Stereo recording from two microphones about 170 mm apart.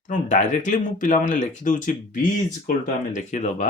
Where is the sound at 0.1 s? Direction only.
45° left (ahead or behind).